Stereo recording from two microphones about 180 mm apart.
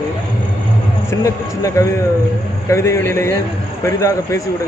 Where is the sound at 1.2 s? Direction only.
20° left (ahead or behind).